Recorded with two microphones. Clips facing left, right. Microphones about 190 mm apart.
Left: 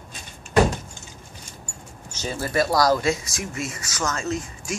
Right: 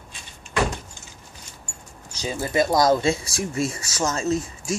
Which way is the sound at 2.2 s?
15° right (ahead or behind).